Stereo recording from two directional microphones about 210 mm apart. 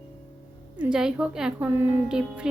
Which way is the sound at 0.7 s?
5° right (ahead or behind).